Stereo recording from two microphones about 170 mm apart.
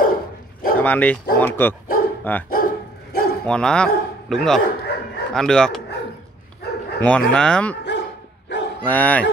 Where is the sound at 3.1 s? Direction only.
65° left (ahead or behind).